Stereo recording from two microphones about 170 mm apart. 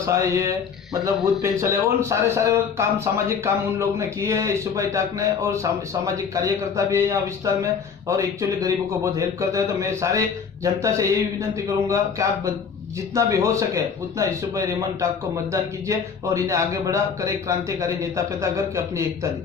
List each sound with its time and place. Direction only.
0.0 s a man's voice: 15° right (ahead or behind)